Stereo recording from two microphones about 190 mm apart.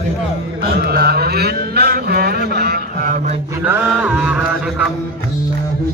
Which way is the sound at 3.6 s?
10° right (ahead or behind).